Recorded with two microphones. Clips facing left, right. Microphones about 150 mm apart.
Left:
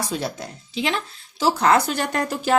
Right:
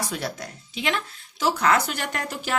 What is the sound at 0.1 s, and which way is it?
Speech, 25° left (ahead or behind).